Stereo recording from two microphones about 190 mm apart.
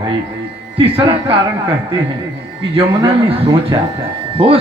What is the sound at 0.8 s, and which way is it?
Speech, 30° right (ahead or behind).